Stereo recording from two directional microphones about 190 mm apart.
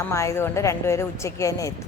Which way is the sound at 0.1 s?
15° left (ahead or behind).